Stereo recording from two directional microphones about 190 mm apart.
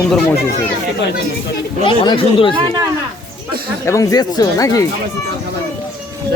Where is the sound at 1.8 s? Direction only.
25° left (ahead or behind).